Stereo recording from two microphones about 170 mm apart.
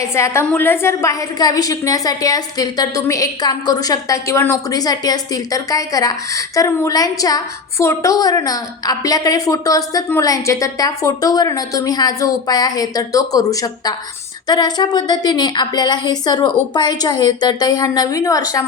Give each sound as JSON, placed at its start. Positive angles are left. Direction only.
{"t": 0.0, "sound": "a woman's voice", "side_deg": 15}